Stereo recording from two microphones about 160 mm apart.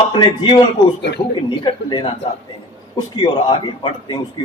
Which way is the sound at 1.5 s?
30° left (ahead or behind).